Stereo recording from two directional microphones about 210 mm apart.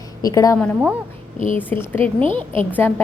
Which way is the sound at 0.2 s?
15° left (ahead or behind).